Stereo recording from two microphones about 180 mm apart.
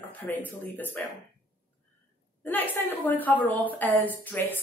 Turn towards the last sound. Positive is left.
turn(degrees=10)  # may be behind; listen again after turning